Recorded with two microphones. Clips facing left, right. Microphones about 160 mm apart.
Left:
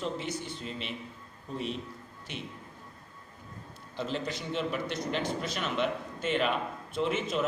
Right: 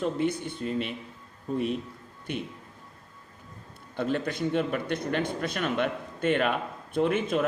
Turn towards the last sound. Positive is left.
turn(degrees=-55)  # may be behind; listen again after turning